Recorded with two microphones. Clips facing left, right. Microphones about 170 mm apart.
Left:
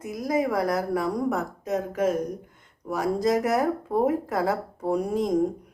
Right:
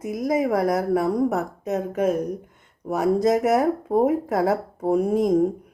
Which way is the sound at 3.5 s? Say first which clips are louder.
Right 4 dB; 25° right (ahead or behind).